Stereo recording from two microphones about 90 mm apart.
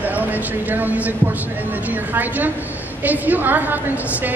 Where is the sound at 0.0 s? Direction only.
20° right (ahead or behind).